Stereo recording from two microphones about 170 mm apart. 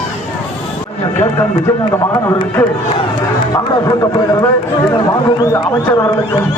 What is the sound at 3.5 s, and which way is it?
Speech, 20° left (ahead or behind).